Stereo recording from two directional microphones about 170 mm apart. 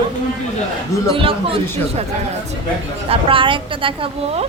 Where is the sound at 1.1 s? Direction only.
30° right (ahead or behind).